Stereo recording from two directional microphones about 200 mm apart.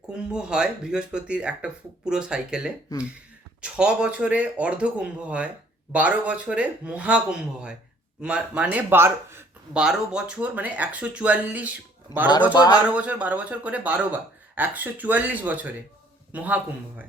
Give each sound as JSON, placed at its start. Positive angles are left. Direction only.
{"t": 0.1, "sound": "speech", "side_deg": -5}
{"t": 12.5, "sound": "speech", "side_deg": 20}
{"t": 12.9, "sound": "a man's voice", "side_deg": -5}